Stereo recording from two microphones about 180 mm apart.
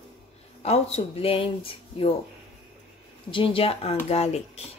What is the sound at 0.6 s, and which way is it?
Speech, 35° left (ahead or behind).